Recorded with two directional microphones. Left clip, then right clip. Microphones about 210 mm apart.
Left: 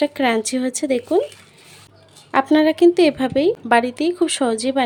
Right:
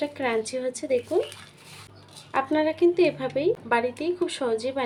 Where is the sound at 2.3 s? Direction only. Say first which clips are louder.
Left 8 dB; 55° left (ahead or behind).